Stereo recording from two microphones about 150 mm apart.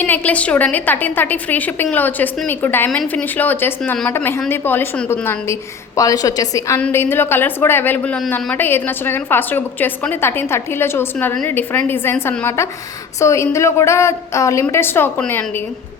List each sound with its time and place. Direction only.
0.0 s a woman's voice: 10° left (ahead or behind)